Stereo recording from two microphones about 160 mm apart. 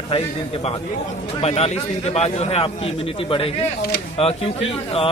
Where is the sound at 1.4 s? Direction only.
40° left (ahead or behind).